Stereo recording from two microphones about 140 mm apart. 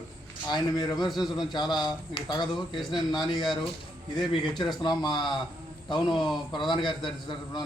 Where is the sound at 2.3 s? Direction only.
35° left (ahead or behind).